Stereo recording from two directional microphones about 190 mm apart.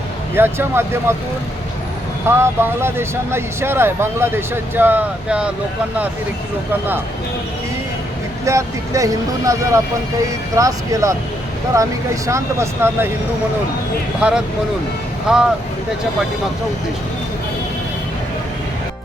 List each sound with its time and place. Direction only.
0.3 s speech: 10° right (ahead or behind)
2.4 s speech: 15° right (ahead or behind)
8.4 s speech: 15° right (ahead or behind)
14.2 s speech: 5° right (ahead or behind)